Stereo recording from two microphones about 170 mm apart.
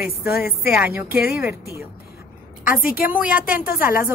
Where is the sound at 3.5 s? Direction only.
55° left (ahead or behind).